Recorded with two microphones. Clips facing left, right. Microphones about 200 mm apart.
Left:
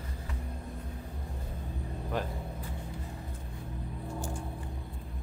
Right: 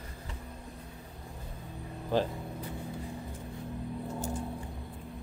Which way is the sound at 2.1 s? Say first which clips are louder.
Right 6 dB; 30° right (ahead or behind).